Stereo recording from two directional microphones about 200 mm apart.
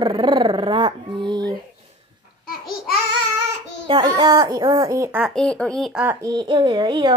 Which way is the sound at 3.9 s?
20° right (ahead or behind).